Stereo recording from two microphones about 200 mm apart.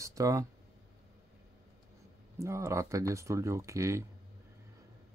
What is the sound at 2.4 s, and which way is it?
Speech, 15° right (ahead or behind).